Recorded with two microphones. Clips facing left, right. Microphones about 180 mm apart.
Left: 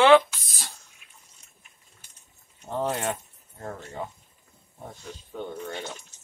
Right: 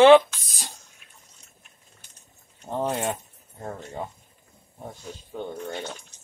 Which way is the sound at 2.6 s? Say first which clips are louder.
Right 1 dB; 10° right (ahead or behind).